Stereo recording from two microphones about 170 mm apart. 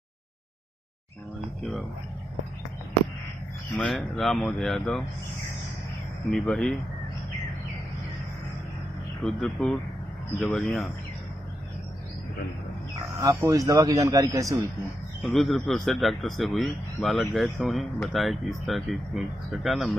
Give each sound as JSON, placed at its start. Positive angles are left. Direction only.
{"t": 3.7, "sound": "a man's voice", "side_deg": 5}
{"t": 6.3, "sound": "a man's voice", "side_deg": 5}
{"t": 9.2, "sound": "a man's voice", "side_deg": 0}
{"t": 13.2, "sound": "a man's voice", "side_deg": -20}
{"t": 15.2, "sound": "a man's voice", "side_deg": 0}